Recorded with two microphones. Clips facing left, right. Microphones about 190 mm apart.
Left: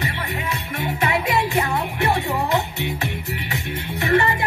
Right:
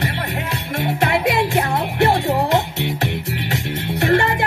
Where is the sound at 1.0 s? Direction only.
70° right (ahead or behind).